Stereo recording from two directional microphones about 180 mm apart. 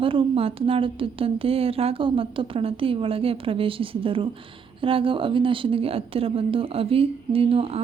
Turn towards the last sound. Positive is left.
turn(degrees=-30)  # may be behind; listen again after turning